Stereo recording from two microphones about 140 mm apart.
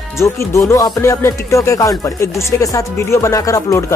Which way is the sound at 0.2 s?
20° left (ahead or behind).